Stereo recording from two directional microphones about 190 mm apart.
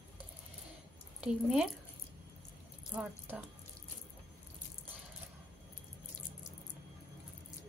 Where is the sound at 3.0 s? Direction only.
10° right (ahead or behind).